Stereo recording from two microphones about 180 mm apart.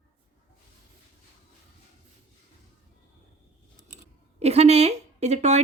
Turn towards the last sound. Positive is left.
turn(degrees=-40)  # may be behind; listen again after turning